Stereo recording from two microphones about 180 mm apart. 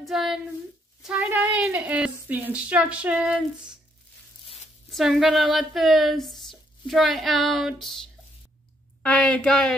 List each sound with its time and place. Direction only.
0.0 s speech: centre (ahead or behind)
4.9 s speech: centre (ahead or behind)
9.0 s speech: 5° left (ahead or behind)